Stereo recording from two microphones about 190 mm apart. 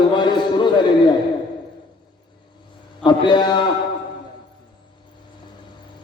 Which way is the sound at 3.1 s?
25° left (ahead or behind).